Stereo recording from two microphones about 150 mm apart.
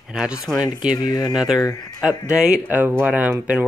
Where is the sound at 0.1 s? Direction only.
5° right (ahead or behind).